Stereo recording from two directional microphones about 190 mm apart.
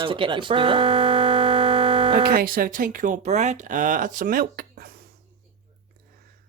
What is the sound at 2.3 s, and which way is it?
Speech, 50° right (ahead or behind).